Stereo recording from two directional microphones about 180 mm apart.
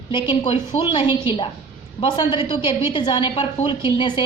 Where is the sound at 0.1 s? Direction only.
30° left (ahead or behind).